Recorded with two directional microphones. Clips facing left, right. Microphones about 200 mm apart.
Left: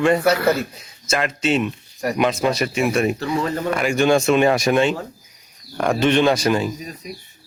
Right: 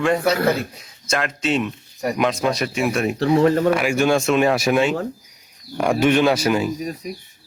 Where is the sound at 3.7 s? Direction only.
5° right (ahead or behind).